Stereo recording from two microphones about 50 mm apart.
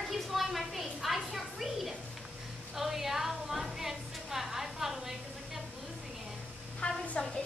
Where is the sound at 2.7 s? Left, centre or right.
Centre.